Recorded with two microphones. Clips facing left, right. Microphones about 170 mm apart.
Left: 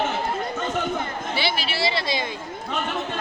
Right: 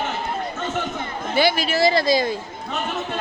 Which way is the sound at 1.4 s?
45° right (ahead or behind).